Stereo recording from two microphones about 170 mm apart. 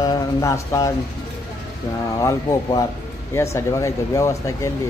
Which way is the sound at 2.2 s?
20° left (ahead or behind).